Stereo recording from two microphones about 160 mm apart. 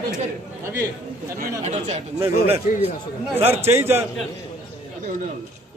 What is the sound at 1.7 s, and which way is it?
Speech, 45° right (ahead or behind).